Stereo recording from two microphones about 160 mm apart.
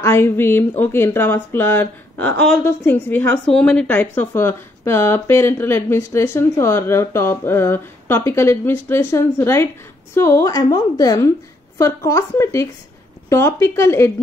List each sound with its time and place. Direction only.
0.0 s a woman's voice: 15° left (ahead or behind)